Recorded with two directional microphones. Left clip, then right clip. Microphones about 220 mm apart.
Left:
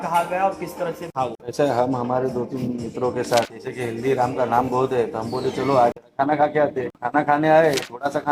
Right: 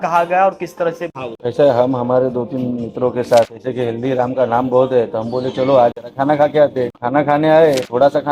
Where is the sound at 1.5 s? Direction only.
40° right (ahead or behind).